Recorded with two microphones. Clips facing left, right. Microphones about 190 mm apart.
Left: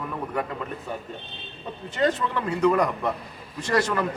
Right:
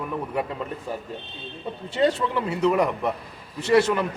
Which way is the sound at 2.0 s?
20° right (ahead or behind).